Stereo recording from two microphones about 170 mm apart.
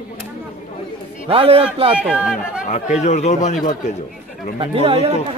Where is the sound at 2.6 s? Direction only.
45° left (ahead or behind).